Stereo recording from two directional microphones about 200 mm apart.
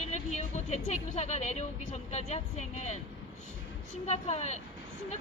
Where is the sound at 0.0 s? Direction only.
35° left (ahead or behind).